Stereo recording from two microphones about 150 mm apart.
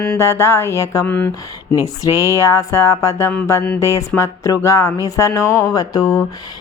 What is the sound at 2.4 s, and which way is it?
A woman's voice, 20° left (ahead or behind).